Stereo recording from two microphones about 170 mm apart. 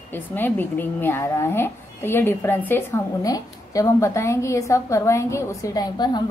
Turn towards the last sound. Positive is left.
turn(degrees=25)  # may be behind; listen again after turning